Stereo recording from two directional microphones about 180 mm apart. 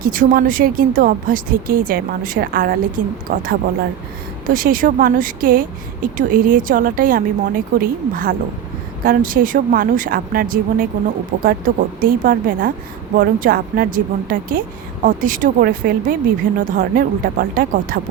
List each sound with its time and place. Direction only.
0.0 s speech: 50° right (ahead or behind)